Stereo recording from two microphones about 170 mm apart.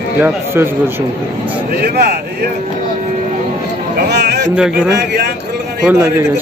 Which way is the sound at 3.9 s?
75° right (ahead or behind).